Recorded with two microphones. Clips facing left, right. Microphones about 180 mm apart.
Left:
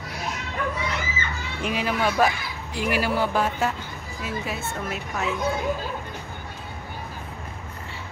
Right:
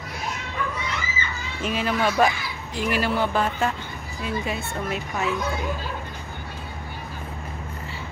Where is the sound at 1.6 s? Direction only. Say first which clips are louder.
Right 1 dB; 10° left (ahead or behind).